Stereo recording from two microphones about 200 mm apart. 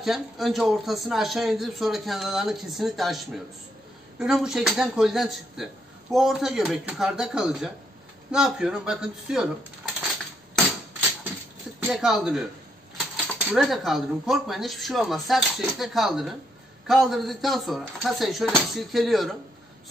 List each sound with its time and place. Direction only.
0.0 s a man's voice: centre (ahead or behind)
11.8 s a man's voice: centre (ahead or behind)